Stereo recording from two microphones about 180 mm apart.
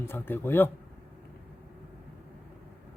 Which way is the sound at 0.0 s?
10° left (ahead or behind).